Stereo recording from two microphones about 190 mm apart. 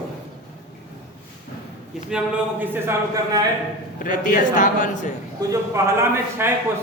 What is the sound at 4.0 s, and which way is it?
A man's voice, 45° left (ahead or behind).